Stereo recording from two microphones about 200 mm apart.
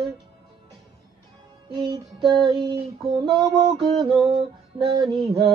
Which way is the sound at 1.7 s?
25° right (ahead or behind).